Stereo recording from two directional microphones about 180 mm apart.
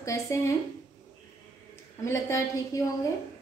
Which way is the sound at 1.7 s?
15° left (ahead or behind).